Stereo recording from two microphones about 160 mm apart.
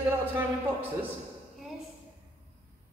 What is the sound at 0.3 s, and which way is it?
Speech, 10° right (ahead or behind).